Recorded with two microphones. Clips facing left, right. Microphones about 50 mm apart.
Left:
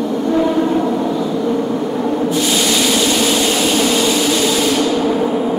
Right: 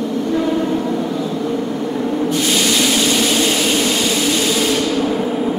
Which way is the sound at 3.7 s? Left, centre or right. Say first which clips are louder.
Left 2 dB; centre.